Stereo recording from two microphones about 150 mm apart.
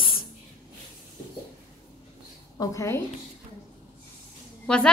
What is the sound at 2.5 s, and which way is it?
Speech, 20° left (ahead or behind).